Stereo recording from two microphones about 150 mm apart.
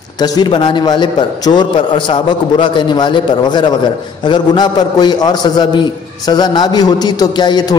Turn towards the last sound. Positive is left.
turn(degrees=30)  # may be behind; listen again after turning